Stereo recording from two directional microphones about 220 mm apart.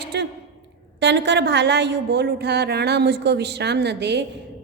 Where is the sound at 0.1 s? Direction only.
50° right (ahead or behind).